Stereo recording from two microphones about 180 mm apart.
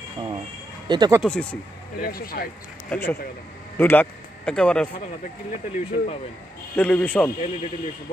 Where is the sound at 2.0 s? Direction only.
55° left (ahead or behind).